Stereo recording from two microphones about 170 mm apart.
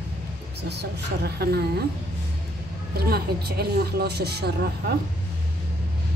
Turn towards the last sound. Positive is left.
turn(degrees=-70)  # may be behind; listen again after turning